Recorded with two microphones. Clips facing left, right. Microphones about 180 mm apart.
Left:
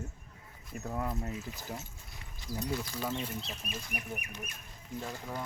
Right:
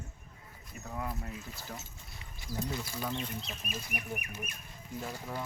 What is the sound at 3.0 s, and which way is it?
Speech, 5° left (ahead or behind).